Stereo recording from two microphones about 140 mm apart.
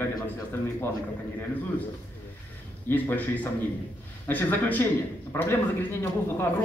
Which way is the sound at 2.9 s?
15° left (ahead or behind).